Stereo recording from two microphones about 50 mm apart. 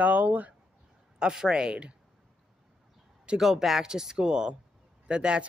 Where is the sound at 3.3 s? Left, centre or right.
Centre.